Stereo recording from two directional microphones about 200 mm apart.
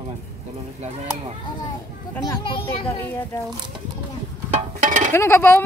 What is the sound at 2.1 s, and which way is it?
Speech, 20° left (ahead or behind).